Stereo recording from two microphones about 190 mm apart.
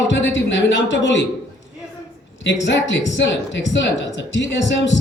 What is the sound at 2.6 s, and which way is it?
A man's voice, 70° left (ahead or behind).